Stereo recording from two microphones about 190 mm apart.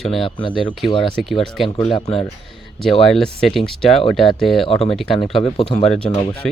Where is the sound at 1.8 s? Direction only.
30° left (ahead or behind).